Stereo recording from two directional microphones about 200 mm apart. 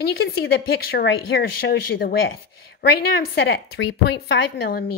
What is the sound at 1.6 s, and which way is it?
Speech, 50° left (ahead or behind).